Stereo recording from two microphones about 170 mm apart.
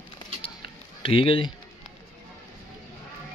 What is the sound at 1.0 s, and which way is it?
Speech, 30° left (ahead or behind).